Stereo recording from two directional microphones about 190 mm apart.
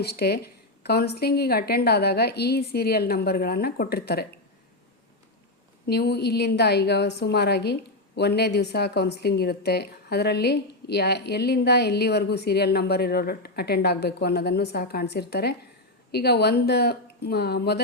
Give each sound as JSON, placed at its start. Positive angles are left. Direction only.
{"t": 0.0, "sound": "a woman's voice", "side_deg": 55}
{"t": 5.8, "sound": "a woman's voice", "side_deg": 55}